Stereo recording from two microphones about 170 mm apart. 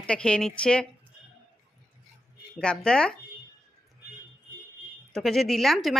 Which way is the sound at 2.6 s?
5° left (ahead or behind).